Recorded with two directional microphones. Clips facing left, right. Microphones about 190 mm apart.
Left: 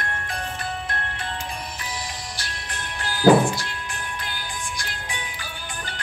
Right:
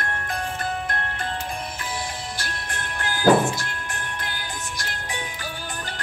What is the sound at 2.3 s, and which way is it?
Music, 50° right (ahead or behind).